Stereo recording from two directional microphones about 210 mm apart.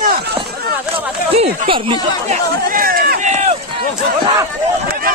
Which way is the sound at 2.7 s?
40° right (ahead or behind).